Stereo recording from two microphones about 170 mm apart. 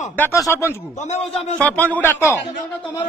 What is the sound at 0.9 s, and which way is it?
Speech, 40° left (ahead or behind).